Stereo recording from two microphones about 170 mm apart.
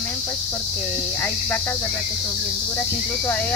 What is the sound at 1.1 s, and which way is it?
Speech, 15° left (ahead or behind).